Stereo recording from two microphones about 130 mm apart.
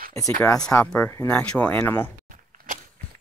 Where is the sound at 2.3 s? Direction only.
90° right.